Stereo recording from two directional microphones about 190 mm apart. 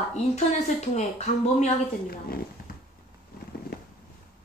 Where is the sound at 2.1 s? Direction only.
50° left (ahead or behind).